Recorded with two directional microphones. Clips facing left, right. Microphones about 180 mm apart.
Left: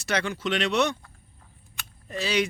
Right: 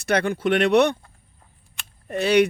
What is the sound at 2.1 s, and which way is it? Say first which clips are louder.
Speech: right 8 dB; 60° right (ahead or behind).